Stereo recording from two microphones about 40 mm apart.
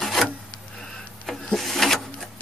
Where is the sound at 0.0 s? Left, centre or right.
Centre.